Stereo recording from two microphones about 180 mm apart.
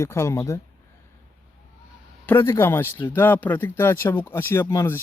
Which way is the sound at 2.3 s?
15° left (ahead or behind).